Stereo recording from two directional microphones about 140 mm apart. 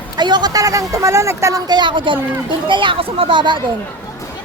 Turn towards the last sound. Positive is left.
turn(degrees=-35)  # may be behind; listen again after turning